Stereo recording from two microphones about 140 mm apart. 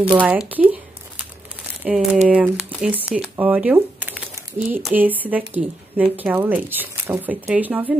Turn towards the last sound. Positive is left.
turn(degrees=-10)  # may be behind; listen again after turning